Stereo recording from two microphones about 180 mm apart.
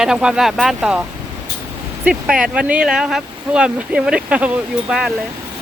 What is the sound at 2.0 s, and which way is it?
Speech, 5° right (ahead or behind).